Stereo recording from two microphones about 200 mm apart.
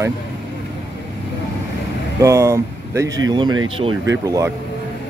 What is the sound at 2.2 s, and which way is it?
Speech, 15° right (ahead or behind).